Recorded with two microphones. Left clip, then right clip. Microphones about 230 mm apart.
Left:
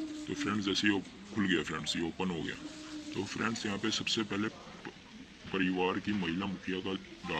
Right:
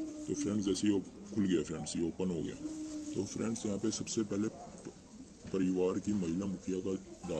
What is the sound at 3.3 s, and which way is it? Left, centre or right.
Speech, centre.